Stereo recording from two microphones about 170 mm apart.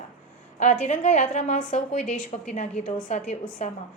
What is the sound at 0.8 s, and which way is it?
A woman's voice, 45° left (ahead or behind).